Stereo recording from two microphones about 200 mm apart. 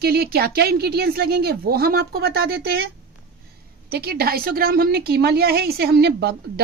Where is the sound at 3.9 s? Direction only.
50° right (ahead or behind).